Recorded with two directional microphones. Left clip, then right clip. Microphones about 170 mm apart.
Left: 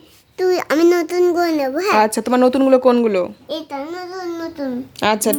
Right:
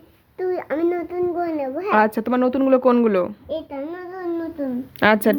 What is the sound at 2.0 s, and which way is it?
A woman's voice, 20° left (ahead or behind).